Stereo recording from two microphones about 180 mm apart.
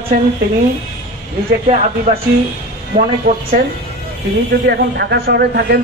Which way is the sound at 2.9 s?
55° right (ahead or behind).